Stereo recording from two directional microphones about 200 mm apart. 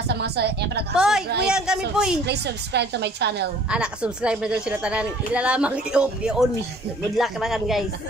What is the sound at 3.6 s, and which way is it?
Speech, 5° right (ahead or behind).